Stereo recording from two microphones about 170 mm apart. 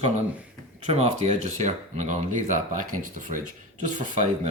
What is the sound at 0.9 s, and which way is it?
Speech, 40° right (ahead or behind).